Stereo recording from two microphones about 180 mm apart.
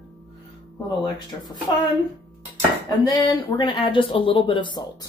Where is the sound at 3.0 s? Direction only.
25° left (ahead or behind).